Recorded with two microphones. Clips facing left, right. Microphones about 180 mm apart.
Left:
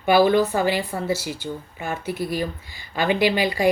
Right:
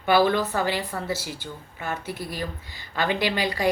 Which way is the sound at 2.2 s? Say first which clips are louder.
Left 6 dB; 15° left (ahead or behind).